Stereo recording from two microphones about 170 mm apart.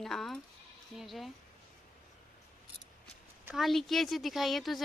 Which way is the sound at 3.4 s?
Centre (ahead or behind).